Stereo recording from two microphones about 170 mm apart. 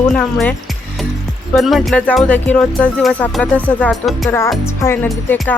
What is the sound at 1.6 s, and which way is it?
Speech, centre (ahead or behind).